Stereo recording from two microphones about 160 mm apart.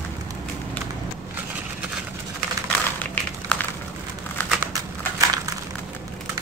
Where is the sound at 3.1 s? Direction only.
10° left (ahead or behind).